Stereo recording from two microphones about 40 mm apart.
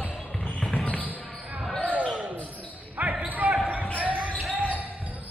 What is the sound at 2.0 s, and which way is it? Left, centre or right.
Basketball bounce, right.